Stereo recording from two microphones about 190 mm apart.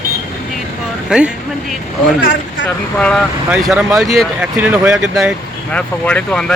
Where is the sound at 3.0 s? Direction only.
5° left (ahead or behind).